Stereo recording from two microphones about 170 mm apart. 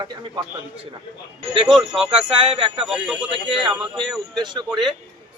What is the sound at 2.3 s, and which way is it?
Speech, 30° right (ahead or behind).